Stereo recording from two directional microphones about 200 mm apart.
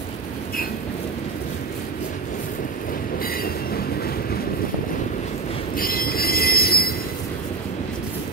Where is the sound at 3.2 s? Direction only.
45° left (ahead or behind).